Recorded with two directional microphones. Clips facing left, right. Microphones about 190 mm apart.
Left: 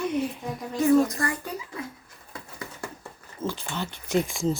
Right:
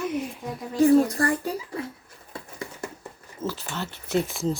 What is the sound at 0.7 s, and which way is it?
Speech, 30° right (ahead or behind).